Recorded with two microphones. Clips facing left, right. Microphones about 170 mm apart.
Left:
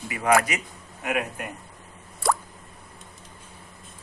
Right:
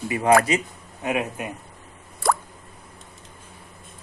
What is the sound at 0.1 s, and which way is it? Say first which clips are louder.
Speech: right 4 dB; 30° right (ahead or behind).